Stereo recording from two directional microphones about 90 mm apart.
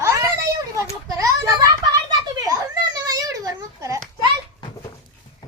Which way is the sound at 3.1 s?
40° right (ahead or behind).